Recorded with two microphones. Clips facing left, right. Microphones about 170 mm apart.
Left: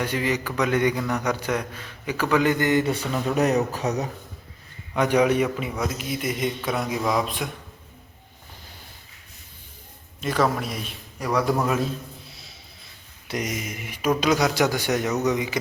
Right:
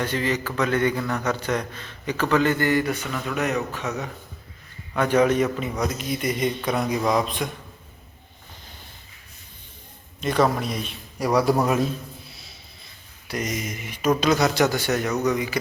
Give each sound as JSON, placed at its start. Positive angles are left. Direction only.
{"t": 0.0, "sound": "speech", "side_deg": 10}
{"t": 4.9, "sound": "a man's voice", "side_deg": 15}
{"t": 10.4, "sound": "a man's voice", "side_deg": 0}
{"t": 11.3, "sound": "a man's voice", "side_deg": -15}
{"t": 12.3, "sound": "a sound", "side_deg": 0}
{"t": 13.2, "sound": "speech", "side_deg": 20}
{"t": 13.5, "sound": "speech", "side_deg": 10}